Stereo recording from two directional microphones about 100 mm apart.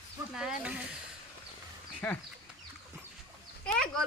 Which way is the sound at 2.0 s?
20° left (ahead or behind).